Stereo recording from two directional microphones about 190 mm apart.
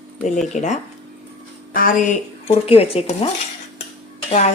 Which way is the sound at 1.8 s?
35° left (ahead or behind).